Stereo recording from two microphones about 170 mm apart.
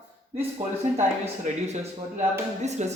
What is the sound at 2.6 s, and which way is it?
Speech, 40° right (ahead or behind).